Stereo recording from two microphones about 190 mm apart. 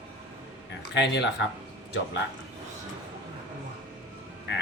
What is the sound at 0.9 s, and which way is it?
Speech, 65° left (ahead or behind).